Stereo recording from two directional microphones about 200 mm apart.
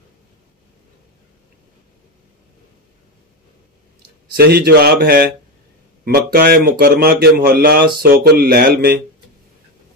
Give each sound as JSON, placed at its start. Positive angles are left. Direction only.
{"t": 4.3, "sound": "speech", "side_deg": -50}